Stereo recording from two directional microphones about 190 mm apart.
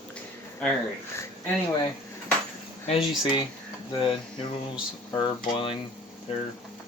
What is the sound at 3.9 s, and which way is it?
Speech, 25° left (ahead or behind).